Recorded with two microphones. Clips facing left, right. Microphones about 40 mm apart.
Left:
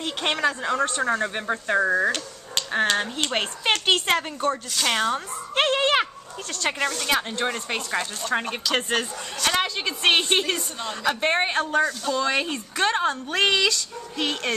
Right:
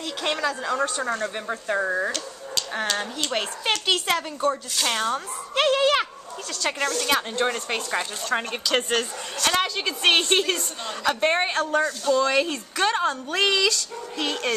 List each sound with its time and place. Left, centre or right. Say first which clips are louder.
0.0 s speech: left 2 dB; left; by 2.1 s centre
2.1 s speech: even; left
4.9 s a woman's voice: left 2 dB; centre
5.5 s speech: right 1 dB; left
6.8 s a woman's voice: right 1 dB; centre
12.3 s a woman's voice: right 2 dB; centre